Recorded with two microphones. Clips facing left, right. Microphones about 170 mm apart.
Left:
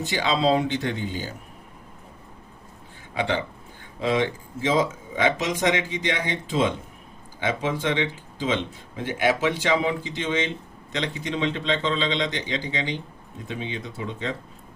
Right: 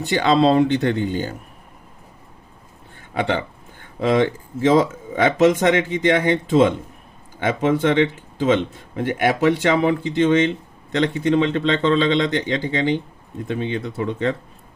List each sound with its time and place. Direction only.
0.2 s speech: 60° right (ahead or behind)
4.6 s a man's voice: 50° right (ahead or behind)